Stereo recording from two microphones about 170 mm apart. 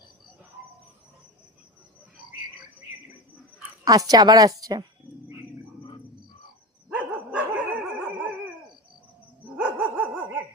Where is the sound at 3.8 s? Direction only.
20° right (ahead or behind).